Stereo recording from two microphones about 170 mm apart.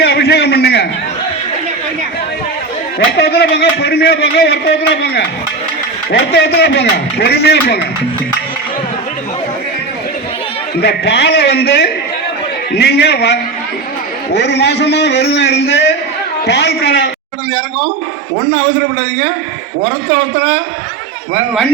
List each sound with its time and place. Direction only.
0.0 s a sound: 70° left (ahead or behind)
3.2 s a man's voice: 75° left (ahead or behind)
10.8 s a man's voice: 75° left (ahead or behind)
14.3 s a man's voice: 85° left